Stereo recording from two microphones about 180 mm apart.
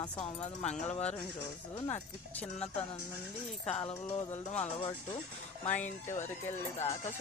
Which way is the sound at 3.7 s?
30° left (ahead or behind).